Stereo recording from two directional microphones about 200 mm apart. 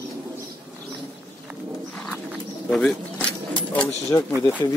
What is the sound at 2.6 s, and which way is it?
Speech, 5° left (ahead or behind).